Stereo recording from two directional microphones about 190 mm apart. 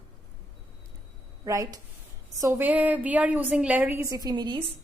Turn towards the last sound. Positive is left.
turn(degrees=-20)  # may be behind; listen again after turning